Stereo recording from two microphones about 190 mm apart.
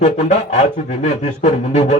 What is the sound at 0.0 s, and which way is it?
A man's voice, 35° left (ahead or behind).